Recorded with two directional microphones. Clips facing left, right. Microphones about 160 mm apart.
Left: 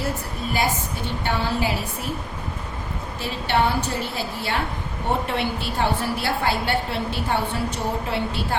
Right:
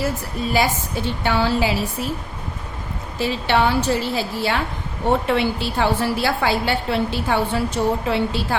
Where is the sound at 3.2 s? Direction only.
90° right.